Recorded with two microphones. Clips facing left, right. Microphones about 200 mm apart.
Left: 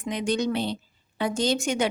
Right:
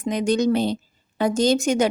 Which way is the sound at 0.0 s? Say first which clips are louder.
Right 6 dB; 45° right (ahead or behind).